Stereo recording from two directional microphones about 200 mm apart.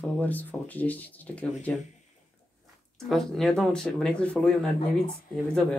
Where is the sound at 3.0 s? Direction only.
Centre (ahead or behind).